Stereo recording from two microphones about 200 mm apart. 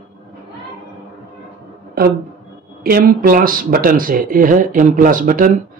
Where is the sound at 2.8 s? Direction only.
45° right (ahead or behind).